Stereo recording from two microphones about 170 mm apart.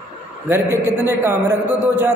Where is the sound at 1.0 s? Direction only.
10° right (ahead or behind).